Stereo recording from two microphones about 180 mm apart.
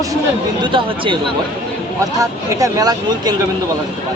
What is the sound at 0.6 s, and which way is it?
Speech, 25° right (ahead or behind).